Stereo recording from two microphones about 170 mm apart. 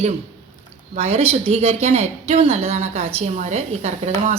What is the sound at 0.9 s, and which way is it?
Speech, 40° right (ahead or behind).